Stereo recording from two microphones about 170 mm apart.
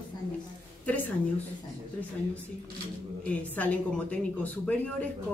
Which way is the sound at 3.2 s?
10° left (ahead or behind).